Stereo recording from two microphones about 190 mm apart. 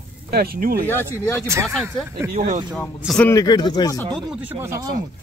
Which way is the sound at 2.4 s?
45° right (ahead or behind).